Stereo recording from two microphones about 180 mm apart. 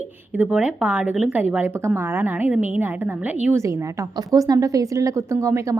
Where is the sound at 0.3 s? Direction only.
5° right (ahead or behind).